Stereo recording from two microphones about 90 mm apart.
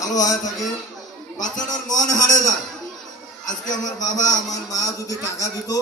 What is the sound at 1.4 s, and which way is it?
A man's voice, 45° left (ahead or behind).